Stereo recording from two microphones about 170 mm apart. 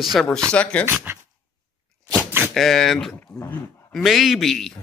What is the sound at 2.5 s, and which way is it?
Speech, centre (ahead or behind).